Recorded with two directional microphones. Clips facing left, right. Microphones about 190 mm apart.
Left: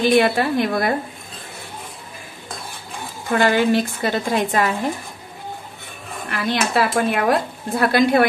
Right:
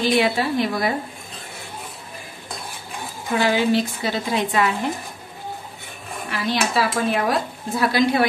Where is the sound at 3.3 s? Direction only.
55° left (ahead or behind).